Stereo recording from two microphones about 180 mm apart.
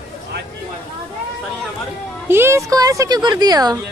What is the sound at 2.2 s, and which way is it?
Speech, 15° right (ahead or behind).